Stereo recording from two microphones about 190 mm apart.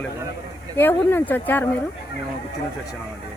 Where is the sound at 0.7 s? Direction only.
10° left (ahead or behind).